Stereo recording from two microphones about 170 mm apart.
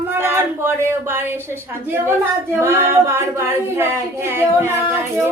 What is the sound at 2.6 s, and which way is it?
A woman's voice, 15° right (ahead or behind).